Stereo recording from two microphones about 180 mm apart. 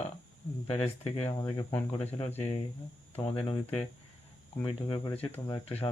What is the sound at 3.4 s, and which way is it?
Speech, 30° left (ahead or behind).